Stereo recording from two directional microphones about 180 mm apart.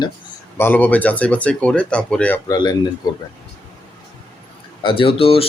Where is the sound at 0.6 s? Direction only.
10° left (ahead or behind).